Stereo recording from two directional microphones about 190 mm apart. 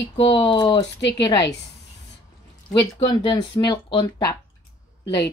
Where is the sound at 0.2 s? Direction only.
25° left (ahead or behind).